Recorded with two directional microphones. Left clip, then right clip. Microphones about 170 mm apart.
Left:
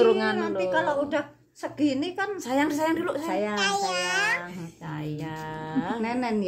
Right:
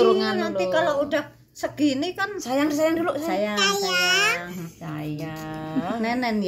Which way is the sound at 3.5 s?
15° left (ahead or behind).